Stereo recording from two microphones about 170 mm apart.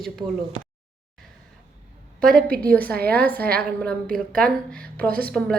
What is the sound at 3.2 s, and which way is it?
A woman's voice, 10° left (ahead or behind).